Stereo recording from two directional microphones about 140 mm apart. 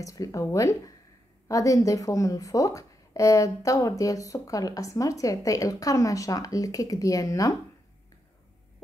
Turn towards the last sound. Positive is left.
turn(degrees=25)  # may be behind; listen again after turning